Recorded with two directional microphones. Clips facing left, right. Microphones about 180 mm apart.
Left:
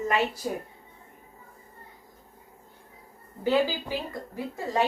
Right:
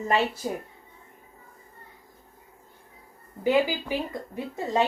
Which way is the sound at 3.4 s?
15° right (ahead or behind).